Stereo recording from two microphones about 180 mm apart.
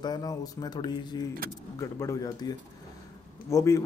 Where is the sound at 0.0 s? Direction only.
20° left (ahead or behind).